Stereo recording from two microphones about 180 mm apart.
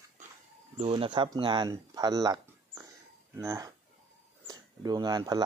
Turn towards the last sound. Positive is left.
turn(degrees=-20)  # may be behind; listen again after turning